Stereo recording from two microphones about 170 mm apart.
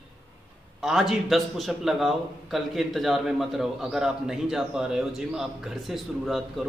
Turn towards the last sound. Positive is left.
turn(degrees=0)  # may be behind; listen again after turning